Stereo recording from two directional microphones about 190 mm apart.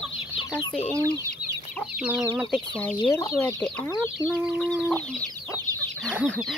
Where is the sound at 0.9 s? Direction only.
15° right (ahead or behind).